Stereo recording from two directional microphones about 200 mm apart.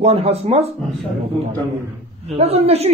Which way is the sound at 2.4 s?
30° right (ahead or behind).